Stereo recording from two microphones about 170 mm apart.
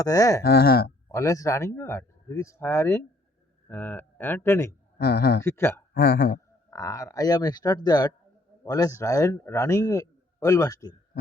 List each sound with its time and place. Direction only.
0.0 s a man's voice: 20° left (ahead or behind)
0.4 s speech: 70° left (ahead or behind)
1.1 s speech: 20° left (ahead or behind)
4.9 s speech: 70° left (ahead or behind)
5.4 s speech: 15° left (ahead or behind)
5.9 s a man's voice: 60° left (ahead or behind)
6.7 s a man's voice: 20° left (ahead or behind)